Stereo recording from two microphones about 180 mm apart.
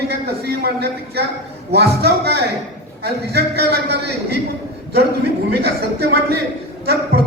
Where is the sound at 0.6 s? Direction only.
60° right (ahead or behind).